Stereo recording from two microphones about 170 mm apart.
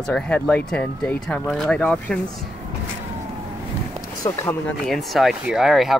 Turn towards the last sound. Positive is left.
turn(degrees=0)  # may be behind; listen again after turning